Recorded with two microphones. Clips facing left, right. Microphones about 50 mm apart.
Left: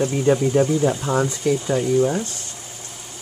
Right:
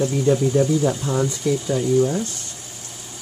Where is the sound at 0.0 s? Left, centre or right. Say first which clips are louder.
Even; left.